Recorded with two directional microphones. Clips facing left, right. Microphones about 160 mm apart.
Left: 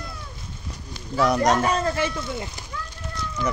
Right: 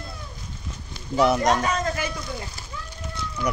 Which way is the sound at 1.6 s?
30° left (ahead or behind).